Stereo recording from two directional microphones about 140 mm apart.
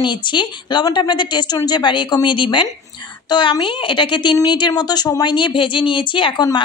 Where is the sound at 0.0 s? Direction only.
35° left (ahead or behind).